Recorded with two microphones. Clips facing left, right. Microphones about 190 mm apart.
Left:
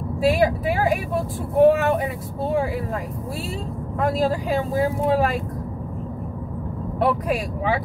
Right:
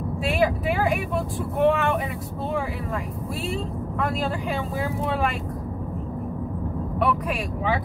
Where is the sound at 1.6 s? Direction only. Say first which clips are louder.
Left 5 dB; 40° left (ahead or behind).